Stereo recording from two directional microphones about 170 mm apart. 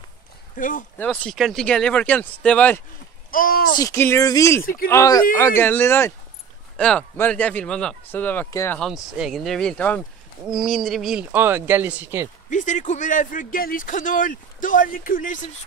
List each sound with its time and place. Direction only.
0.6 s speech: 50° left (ahead or behind)
0.9 s speech: 10° left (ahead or behind)
3.3 s speech: 55° left (ahead or behind)
3.7 s speech: 15° left (ahead or behind)
8.7 s speech: centre (ahead or behind)
12.4 s speech: 50° left (ahead or behind)